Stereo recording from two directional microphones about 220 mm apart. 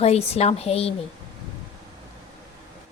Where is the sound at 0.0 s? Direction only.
30° left (ahead or behind).